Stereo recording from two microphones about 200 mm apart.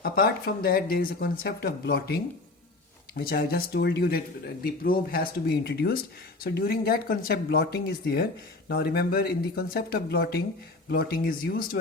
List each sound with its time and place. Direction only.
0.0 s speech: 50° left (ahead or behind)
3.2 s speech: 50° left (ahead or behind)